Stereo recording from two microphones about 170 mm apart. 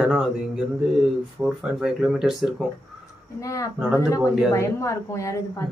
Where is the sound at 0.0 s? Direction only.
5° right (ahead or behind).